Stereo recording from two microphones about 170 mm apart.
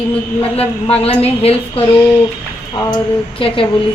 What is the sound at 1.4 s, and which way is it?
Speech, 35° left (ahead or behind).